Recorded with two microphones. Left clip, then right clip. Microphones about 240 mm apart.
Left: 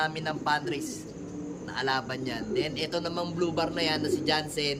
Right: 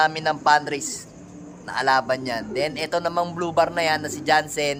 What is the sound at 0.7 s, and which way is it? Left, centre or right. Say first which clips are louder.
A man's voice: right 5 dB; centre.